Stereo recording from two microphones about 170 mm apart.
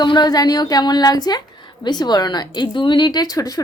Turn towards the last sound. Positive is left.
turn(degrees=20)  # may be behind; listen again after turning